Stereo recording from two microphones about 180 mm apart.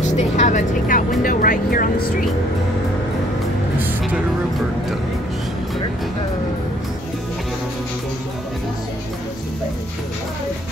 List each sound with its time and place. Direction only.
0.0 s music: 40° left (ahead or behind)
1.2 s speech: 50° left (ahead or behind)